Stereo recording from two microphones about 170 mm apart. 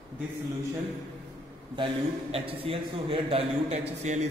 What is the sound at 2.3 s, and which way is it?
A man's voice, 35° right (ahead or behind).